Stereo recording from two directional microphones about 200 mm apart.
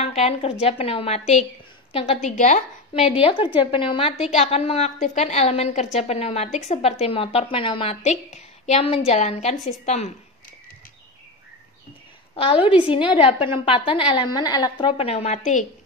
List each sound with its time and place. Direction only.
0.0 s a woman's voice: 30° left (ahead or behind)
12.4 s a woman's voice: 30° left (ahead or behind)